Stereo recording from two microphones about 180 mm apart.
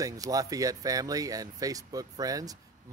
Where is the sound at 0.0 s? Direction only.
20° right (ahead or behind).